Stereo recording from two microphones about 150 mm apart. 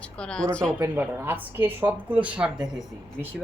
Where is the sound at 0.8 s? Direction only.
15° right (ahead or behind).